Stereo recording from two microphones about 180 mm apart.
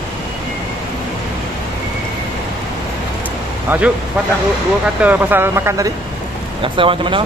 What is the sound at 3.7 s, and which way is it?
Speech, 5° right (ahead or behind).